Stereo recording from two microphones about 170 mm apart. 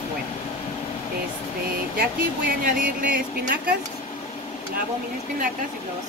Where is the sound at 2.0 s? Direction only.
55° right (ahead or behind).